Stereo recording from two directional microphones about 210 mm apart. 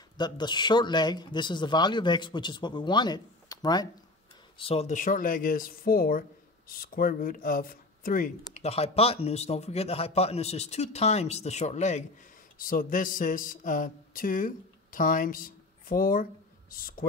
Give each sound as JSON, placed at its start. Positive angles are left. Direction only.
{"t": 0.2, "sound": "a man's voice", "side_deg": 20}
{"t": 12.5, "sound": "a sound", "side_deg": 40}
{"t": 16.7, "sound": "speech", "side_deg": 40}